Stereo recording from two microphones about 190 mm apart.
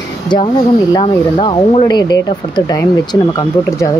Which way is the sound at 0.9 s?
25° left (ahead or behind).